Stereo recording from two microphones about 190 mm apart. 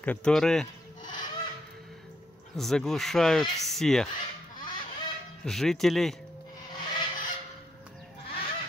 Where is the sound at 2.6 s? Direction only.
Centre (ahead or behind).